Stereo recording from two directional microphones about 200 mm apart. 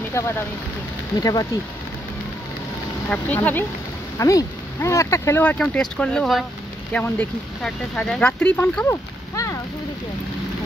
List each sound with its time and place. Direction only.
0.2 s speech: 15° left (ahead or behind)
3.1 s speech: 10° left (ahead or behind)